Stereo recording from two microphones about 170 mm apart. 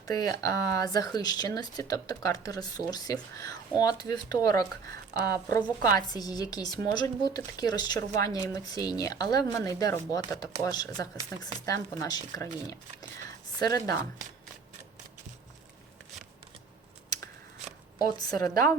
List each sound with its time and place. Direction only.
0.0 s speech: 20° left (ahead or behind)
13.6 s speech: 20° left (ahead or behind)
18.0 s speech: 20° left (ahead or behind)